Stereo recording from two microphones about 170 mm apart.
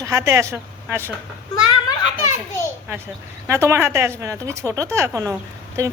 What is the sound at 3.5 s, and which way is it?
Speech, 15° right (ahead or behind).